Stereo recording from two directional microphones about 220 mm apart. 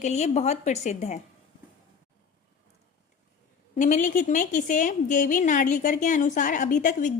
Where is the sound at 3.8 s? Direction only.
35° left (ahead or behind).